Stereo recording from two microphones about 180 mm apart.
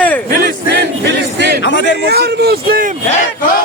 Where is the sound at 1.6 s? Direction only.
80° left.